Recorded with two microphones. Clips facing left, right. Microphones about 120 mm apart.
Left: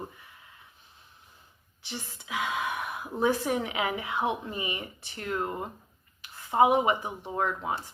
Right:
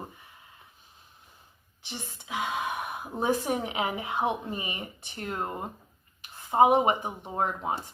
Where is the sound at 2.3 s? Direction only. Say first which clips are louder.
Even; 30° right (ahead or behind).